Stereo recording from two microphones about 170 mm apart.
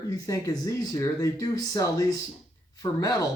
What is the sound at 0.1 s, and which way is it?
Speech, 20° left (ahead or behind).